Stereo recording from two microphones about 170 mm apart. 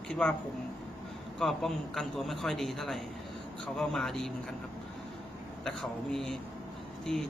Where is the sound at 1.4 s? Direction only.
Centre (ahead or behind).